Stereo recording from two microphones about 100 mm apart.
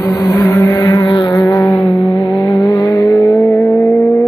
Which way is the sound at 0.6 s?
30° left (ahead or behind).